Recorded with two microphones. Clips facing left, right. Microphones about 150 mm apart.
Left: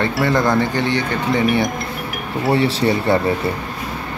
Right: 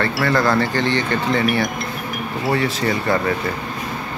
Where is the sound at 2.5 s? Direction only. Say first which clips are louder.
Left 4 dB; 30° left (ahead or behind).